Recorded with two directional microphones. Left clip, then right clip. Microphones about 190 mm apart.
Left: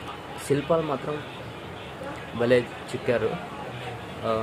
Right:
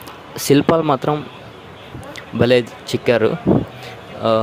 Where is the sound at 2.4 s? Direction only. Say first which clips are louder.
Right 7 dB; 50° right (ahead or behind).